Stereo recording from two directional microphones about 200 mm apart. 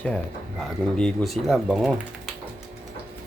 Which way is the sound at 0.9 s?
Centre (ahead or behind).